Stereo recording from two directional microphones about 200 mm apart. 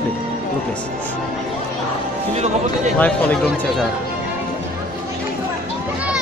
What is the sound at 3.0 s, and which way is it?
Speech, 5° left (ahead or behind).